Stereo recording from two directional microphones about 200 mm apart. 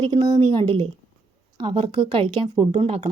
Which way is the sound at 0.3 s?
25° right (ahead or behind).